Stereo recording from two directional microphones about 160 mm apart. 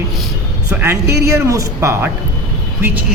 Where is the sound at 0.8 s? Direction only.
15° right (ahead or behind).